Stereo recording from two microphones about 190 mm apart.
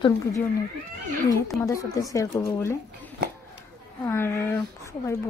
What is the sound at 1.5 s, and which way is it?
A woman's voice, 15° left (ahead or behind).